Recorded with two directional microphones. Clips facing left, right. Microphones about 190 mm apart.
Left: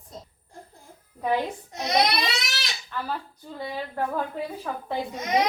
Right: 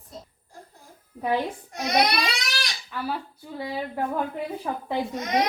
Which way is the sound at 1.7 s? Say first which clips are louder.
Right 1 dB; 25° left (ahead or behind).